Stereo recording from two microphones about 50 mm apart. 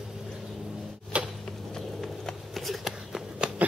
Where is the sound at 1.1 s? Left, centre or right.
Right.